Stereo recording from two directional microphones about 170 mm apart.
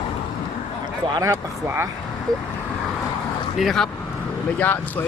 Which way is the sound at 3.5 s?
Centre (ahead or behind).